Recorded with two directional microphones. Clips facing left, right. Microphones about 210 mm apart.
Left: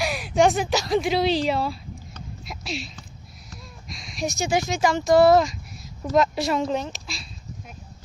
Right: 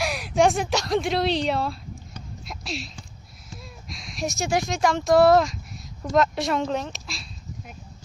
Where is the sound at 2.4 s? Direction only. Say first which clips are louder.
Left 1 dB; centre (ahead or behind).